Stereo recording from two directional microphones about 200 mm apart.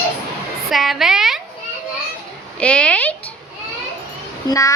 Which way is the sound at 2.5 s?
5° left (ahead or behind).